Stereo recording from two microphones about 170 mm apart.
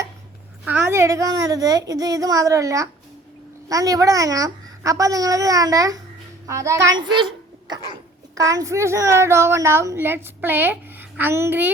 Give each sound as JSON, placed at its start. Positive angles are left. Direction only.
{"t": 0.6, "sound": "a child's voice", "side_deg": -10}
{"t": 8.4, "sound": "a woman's voice", "side_deg": -20}